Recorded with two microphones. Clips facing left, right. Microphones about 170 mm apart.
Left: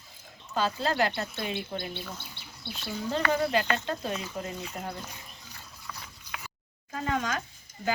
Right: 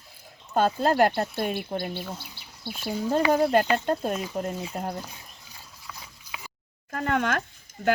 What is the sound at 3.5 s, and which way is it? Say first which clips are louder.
Speech: right 6 dB; 50° right (ahead or behind).